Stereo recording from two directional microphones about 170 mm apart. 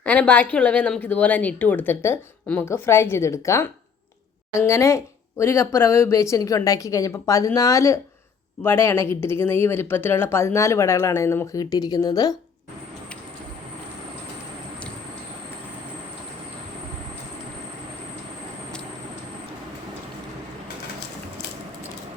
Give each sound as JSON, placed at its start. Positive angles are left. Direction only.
{"t": 0.0, "sound": "speech", "side_deg": 10}